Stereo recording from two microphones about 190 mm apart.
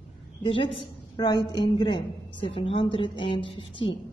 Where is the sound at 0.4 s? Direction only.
30° left (ahead or behind).